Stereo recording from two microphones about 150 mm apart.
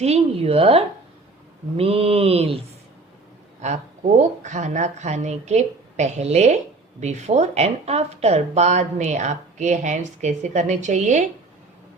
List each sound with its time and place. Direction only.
0.0 s mantra: 45° right (ahead or behind)
4.2 s speech: 55° right (ahead or behind)